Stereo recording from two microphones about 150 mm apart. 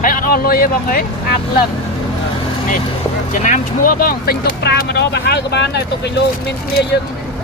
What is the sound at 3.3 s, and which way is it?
Speech, 60° left (ahead or behind).